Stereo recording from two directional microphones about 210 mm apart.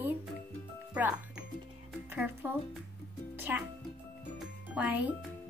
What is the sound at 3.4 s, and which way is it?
Music, 10° right (ahead or behind).